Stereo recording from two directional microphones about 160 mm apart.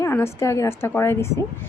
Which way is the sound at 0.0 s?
15° left (ahead or behind).